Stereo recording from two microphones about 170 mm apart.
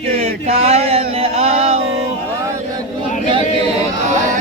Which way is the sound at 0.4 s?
35° right (ahead or behind).